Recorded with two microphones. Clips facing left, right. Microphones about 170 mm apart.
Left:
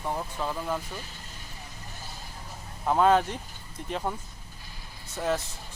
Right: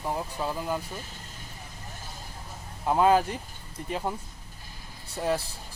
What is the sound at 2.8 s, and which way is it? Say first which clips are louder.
Speech: even; 5° right (ahead or behind).